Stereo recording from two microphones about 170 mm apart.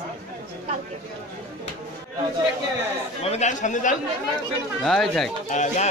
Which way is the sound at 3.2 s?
40° left (ahead or behind).